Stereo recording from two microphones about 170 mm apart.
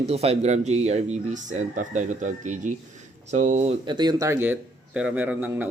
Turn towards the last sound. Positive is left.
turn(degrees=-10)  # may be behind; listen again after turning